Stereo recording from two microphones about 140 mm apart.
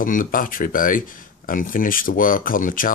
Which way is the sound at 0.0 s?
75° left (ahead or behind).